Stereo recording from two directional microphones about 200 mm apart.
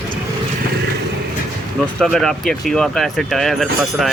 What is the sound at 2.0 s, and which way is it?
Speech, centre (ahead or behind).